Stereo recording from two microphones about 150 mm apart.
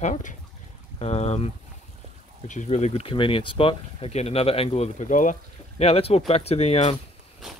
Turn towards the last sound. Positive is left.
turn(degrees=40)  # may be behind; listen again after turning